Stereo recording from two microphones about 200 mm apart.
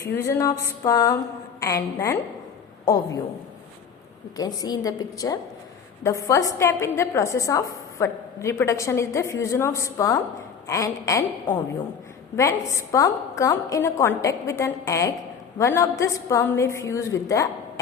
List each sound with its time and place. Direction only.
0.0 s a woman's voice: 15° left (ahead or behind)
4.4 s a woman's voice: 20° left (ahead or behind)
6.0 s a woman's voice: 15° left (ahead or behind)
12.4 s a woman's voice: 15° left (ahead or behind)